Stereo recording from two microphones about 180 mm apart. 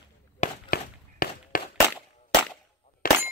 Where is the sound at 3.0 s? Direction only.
50° left (ahead or behind).